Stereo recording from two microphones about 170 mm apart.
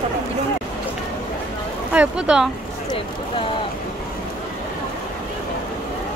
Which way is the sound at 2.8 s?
30° left (ahead or behind).